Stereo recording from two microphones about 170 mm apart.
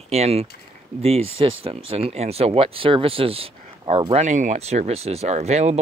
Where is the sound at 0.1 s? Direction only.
40° right (ahead or behind).